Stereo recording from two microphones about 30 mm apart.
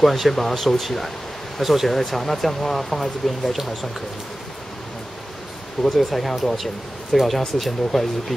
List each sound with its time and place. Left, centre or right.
0.0 s speech: centre
1.9 s speech: centre
5.9 s speech: centre